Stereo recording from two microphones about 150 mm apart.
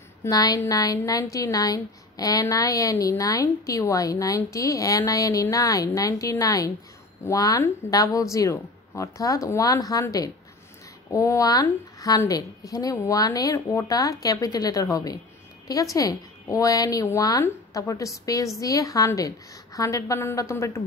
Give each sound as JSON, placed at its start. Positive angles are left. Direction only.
{"t": 0.2, "sound": "a woman's voice", "side_deg": 25}